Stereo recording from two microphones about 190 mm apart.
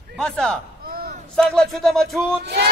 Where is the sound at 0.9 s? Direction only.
50° right (ahead or behind).